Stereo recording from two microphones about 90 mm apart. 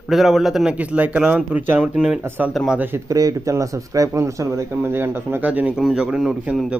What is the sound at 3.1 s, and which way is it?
Speech, 40° right (ahead or behind).